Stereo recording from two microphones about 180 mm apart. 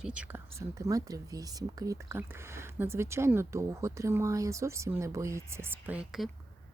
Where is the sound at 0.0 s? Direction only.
5° right (ahead or behind).